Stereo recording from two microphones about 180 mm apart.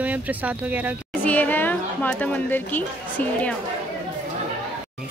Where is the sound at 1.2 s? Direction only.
10° left (ahead or behind).